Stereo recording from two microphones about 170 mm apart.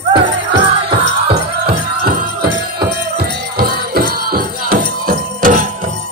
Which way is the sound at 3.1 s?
60° right (ahead or behind).